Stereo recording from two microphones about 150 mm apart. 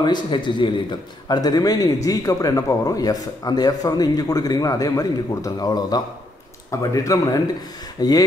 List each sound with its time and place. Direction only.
0.0 s a man's voice: 30° left (ahead or behind)